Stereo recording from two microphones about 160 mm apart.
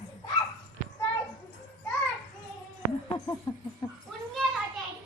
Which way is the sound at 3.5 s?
20° left (ahead or behind).